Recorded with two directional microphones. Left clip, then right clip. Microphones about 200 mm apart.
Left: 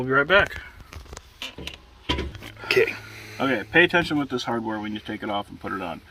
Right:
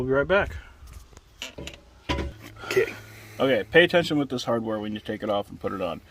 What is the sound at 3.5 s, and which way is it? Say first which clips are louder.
Speech: even; 50° right (ahead or behind).